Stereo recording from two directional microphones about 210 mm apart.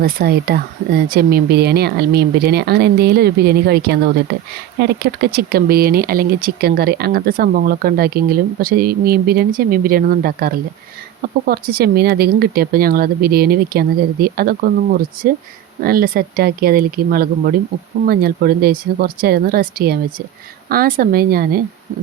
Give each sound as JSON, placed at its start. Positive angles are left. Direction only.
{"t": 0.0, "sound": "speech", "side_deg": -45}